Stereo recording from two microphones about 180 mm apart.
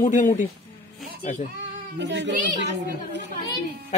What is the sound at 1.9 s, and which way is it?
Speech, 90° right.